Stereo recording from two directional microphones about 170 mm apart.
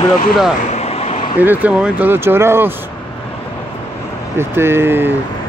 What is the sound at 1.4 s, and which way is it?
Speech, 10° right (ahead or behind).